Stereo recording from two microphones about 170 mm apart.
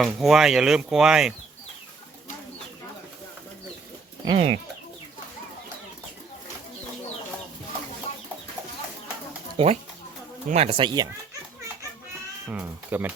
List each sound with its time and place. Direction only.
0.0 s speech: centre (ahead or behind)
4.3 s speech: 35° right (ahead or behind)
9.6 s speech: 30° right (ahead or behind)
12.5 s speech: 10° right (ahead or behind)